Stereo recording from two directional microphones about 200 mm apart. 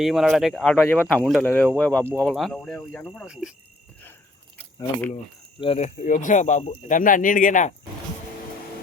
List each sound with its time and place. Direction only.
0.0 s speech: centre (ahead or behind)
5.5 s speech: 30° left (ahead or behind)